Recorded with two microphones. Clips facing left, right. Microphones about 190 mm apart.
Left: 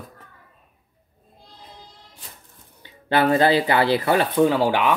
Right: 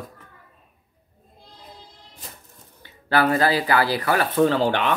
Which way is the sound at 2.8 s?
20° left (ahead or behind).